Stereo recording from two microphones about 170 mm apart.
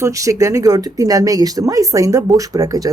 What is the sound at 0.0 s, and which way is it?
Speech, 20° right (ahead or behind).